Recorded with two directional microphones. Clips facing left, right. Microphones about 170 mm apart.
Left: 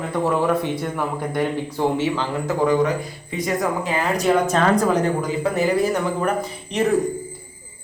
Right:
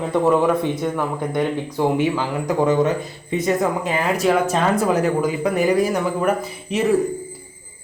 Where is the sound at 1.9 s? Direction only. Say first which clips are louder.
Right 2 dB; 10° right (ahead or behind).